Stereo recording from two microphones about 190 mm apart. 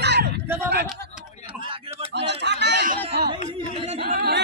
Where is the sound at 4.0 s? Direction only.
55° right (ahead or behind).